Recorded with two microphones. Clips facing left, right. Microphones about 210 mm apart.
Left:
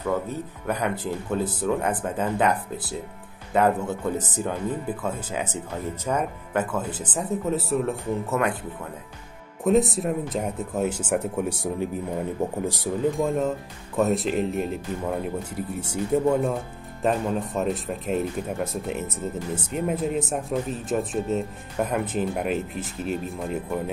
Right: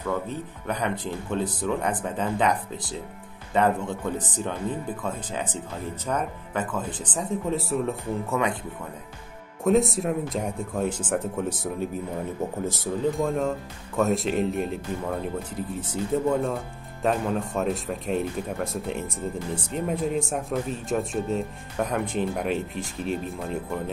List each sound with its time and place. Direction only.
0.0 s speech: 10° left (ahead or behind)
9.7 s speech: centre (ahead or behind)
13.2 s speech: centre (ahead or behind)